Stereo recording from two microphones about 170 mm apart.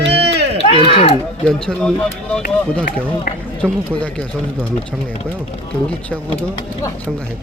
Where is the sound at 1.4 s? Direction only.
5° left (ahead or behind).